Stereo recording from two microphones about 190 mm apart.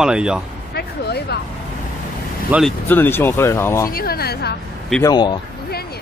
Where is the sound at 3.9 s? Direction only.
50° left (ahead or behind).